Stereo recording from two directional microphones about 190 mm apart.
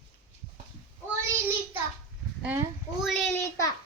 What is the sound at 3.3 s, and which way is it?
Speech, 15° left (ahead or behind).